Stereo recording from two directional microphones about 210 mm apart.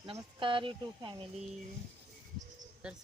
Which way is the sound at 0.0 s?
25° right (ahead or behind).